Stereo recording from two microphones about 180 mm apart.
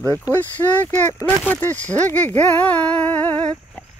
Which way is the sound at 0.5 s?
10° left (ahead or behind).